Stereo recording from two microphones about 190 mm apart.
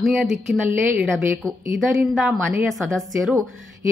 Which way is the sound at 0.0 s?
Centre (ahead or behind).